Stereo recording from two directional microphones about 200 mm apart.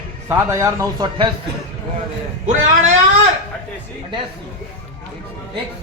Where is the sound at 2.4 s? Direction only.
40° right (ahead or behind).